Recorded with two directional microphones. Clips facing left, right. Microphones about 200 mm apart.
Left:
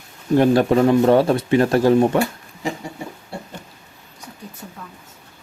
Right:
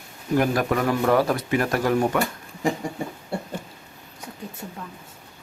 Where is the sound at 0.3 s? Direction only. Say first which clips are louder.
Left 7 dB; 30° left (ahead or behind).